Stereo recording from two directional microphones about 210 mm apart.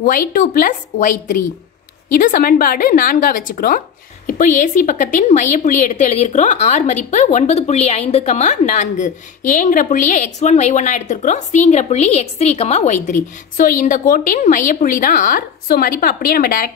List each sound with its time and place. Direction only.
0.0 s a woman's voice: 40° left (ahead or behind)